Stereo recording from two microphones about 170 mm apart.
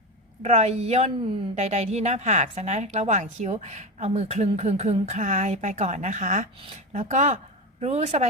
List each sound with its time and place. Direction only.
0.4 s a woman's voice: 40° right (ahead or behind)